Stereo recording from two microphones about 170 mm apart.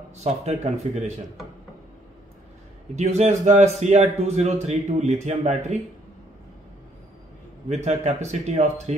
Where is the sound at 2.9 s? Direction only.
40° right (ahead or behind).